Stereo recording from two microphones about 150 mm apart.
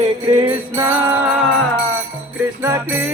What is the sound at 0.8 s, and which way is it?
Music, 15° right (ahead or behind).